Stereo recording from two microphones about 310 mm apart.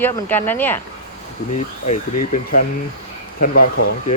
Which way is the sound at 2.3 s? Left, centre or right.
Left.